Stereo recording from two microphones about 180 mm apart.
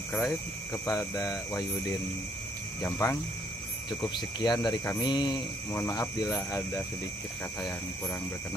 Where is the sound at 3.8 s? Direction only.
25° left (ahead or behind).